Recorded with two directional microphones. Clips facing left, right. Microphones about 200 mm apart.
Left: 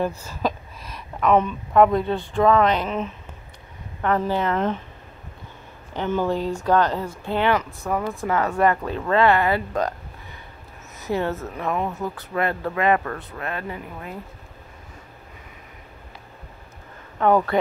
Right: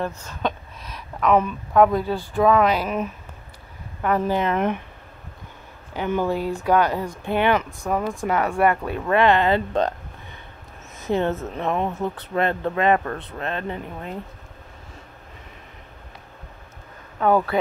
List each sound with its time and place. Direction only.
0.2 s speech: 5° left (ahead or behind); by 4.8 s 15° right (ahead or behind)
5.9 s speech: 10° right (ahead or behind)
11.1 s speech: 20° right (ahead or behind)
17.2 s speech: 5° right (ahead or behind)